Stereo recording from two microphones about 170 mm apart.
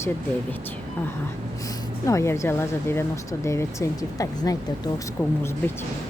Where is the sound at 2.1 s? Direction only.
15° left (ahead or behind).